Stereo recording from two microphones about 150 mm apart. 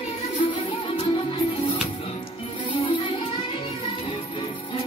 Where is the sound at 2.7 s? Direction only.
35° left (ahead or behind).